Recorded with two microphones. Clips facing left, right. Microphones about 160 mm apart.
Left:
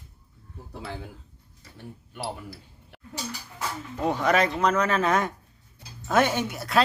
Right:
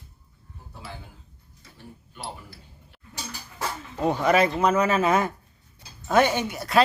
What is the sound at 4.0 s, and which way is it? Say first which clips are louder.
A man's voice: right 2 dB; centre (ahead or behind).